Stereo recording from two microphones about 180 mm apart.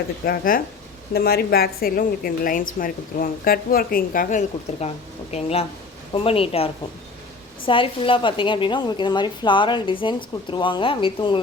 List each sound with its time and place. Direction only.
0.3 s a woman's voice: 50° left (ahead or behind)
5.3 s speech: 35° left (ahead or behind)
7.7 s speech: 30° left (ahead or behind)